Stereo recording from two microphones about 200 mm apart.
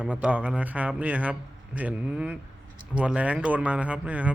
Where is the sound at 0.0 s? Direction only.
5° right (ahead or behind).